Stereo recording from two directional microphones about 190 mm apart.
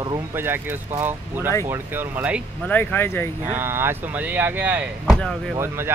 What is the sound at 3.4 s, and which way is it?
Speech, 10° right (ahead or behind).